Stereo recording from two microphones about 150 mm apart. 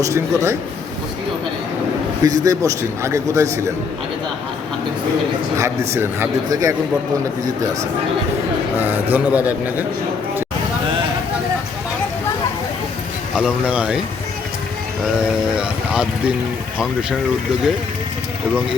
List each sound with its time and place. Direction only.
0.0 s a man's voice: 20° right (ahead or behind)
2.2 s a man's voice: 25° right (ahead or behind)
5.5 s a man's voice: 20° right (ahead or behind)
8.8 s a man's voice: 10° right (ahead or behind)
13.3 s speech: 5° right (ahead or behind)
15.0 s speech: 5° right (ahead or behind)